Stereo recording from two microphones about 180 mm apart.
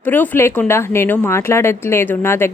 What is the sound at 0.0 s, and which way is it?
Speech, 10° left (ahead or behind).